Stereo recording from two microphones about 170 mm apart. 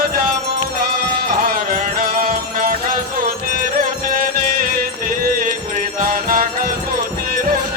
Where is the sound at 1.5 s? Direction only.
55° right (ahead or behind).